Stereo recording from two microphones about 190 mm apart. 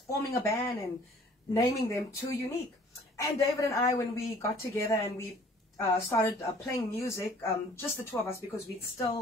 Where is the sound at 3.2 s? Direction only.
15° left (ahead or behind).